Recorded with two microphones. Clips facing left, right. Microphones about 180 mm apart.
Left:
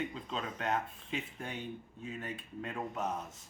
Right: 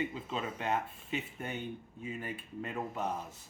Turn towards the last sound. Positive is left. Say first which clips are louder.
# right 1 dB
turn(degrees=0)  # may be behind; listen again after turning